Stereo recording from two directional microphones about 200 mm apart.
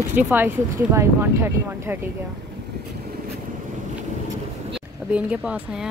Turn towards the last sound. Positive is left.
turn(degrees=-5)  # may be behind; listen again after turning